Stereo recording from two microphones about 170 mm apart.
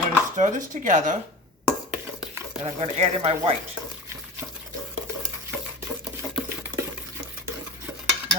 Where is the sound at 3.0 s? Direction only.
35° right (ahead or behind).